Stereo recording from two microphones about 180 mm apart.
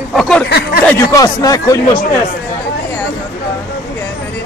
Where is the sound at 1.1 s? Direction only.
20° left (ahead or behind).